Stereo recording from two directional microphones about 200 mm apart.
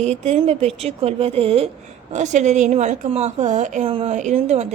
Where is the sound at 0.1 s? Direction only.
35° right (ahead or behind).